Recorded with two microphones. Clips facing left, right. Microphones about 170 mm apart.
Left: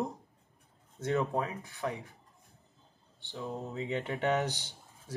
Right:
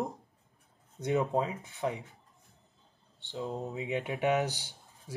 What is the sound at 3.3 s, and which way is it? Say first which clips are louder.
Speech: right 2 dB; 20° right (ahead or behind).